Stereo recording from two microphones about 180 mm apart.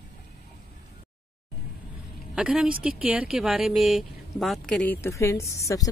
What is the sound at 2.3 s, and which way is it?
A woman's voice, 5° right (ahead or behind).